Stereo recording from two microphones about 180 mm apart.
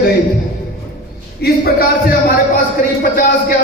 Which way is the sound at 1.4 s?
60° left (ahead or behind).